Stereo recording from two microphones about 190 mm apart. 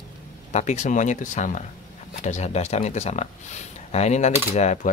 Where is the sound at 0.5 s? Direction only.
40° left (ahead or behind).